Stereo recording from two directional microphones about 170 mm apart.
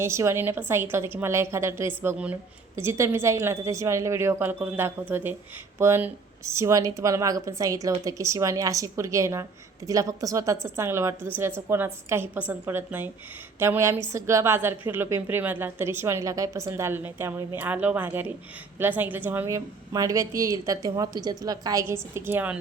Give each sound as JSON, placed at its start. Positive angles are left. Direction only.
{"t": 0.0, "sound": "a woman's voice", "side_deg": -15}